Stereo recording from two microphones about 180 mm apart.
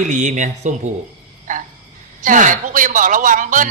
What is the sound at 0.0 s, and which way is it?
Speech, 45° right (ahead or behind).